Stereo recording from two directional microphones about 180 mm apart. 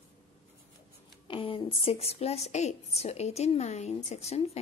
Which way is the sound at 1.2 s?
30° left (ahead or behind).